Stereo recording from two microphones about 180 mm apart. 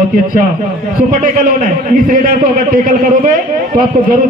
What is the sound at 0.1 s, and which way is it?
A man's voice, 50° right (ahead or behind).